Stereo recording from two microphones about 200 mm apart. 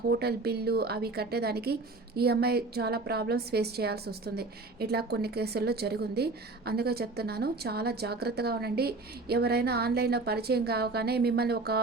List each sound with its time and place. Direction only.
0.1 s a woman's voice: 55° right (ahead or behind)